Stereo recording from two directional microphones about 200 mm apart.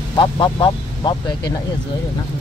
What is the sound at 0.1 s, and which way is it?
Speech, 25° left (ahead or behind).